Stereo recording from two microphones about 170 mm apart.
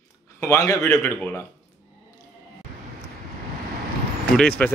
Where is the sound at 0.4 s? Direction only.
20° left (ahead or behind).